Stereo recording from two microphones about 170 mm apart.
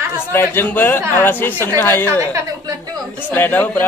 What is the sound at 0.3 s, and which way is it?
A man's voice, 15° left (ahead or behind).